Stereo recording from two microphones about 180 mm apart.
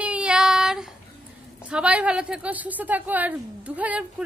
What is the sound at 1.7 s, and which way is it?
A woman's voice, 5° right (ahead or behind).